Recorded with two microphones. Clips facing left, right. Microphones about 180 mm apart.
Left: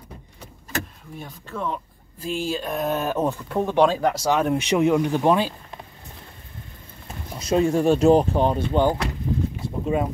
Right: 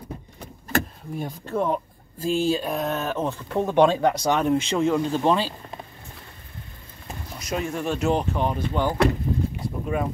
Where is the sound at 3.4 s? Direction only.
Centre (ahead or behind).